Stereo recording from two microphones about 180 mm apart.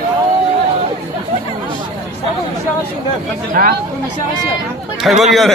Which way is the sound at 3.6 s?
55° right (ahead or behind).